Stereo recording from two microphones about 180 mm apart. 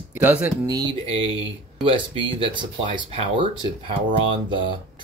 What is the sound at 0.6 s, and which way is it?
Speech, 20° right (ahead or behind).